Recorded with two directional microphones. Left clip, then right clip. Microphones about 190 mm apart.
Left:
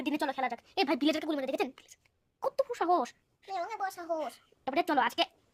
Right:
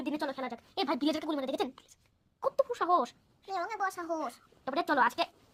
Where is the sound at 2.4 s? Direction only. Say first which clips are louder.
Right 1 dB; 30° left (ahead or behind).